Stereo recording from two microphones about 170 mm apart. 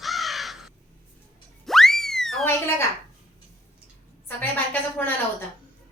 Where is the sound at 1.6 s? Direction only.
Centre (ahead or behind).